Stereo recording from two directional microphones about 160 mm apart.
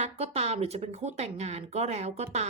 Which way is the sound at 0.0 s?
40° right (ahead or behind).